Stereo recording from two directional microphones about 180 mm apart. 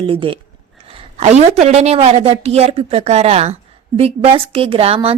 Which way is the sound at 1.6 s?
35° right (ahead or behind).